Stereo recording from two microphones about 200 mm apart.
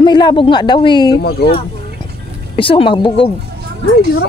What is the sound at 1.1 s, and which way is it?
Speech, 50° left (ahead or behind).